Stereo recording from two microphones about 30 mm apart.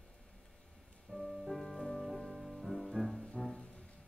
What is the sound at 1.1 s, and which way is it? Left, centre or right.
Music, left.